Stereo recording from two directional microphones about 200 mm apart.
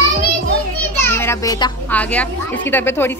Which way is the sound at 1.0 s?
10° left (ahead or behind).